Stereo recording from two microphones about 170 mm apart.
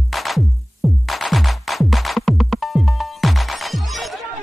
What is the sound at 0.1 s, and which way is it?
Music, centre (ahead or behind).